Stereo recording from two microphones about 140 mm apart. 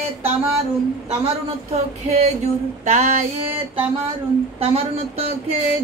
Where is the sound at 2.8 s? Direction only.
60° right (ahead or behind).